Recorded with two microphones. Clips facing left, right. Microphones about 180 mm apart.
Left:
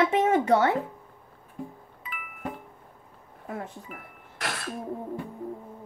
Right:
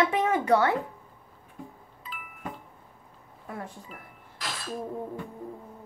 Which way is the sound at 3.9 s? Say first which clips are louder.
Left 2 dB; 60° left (ahead or behind).